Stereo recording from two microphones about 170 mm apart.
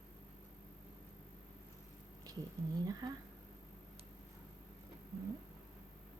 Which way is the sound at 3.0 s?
25° right (ahead or behind).